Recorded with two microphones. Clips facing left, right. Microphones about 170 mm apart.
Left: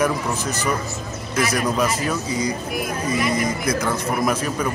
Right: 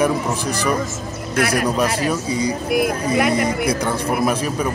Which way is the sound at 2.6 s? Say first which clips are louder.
Right 8 dB; 80° right.